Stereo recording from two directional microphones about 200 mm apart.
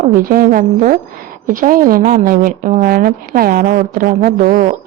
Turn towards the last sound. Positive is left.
turn(degrees=-40)  # may be behind; listen again after turning